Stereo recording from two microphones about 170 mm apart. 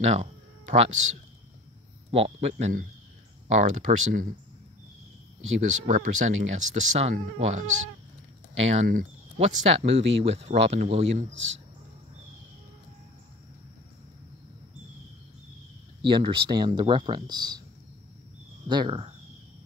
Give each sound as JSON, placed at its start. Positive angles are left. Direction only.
{"t": 0.0, "sound": "a sound", "side_deg": -40}
{"t": 2.0, "sound": "speech", "side_deg": -35}
{"t": 5.6, "sound": "speech", "side_deg": -45}
{"t": 8.7, "sound": "speech", "side_deg": -50}
{"t": 9.8, "sound": "speech", "side_deg": -35}
{"t": 11.3, "sound": "speech", "side_deg": -90}
{"t": 16.0, "sound": "speech", "side_deg": -25}
{"t": 18.7, "sound": "speech", "side_deg": -30}